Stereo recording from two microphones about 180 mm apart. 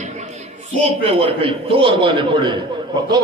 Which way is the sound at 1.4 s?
30° right (ahead or behind).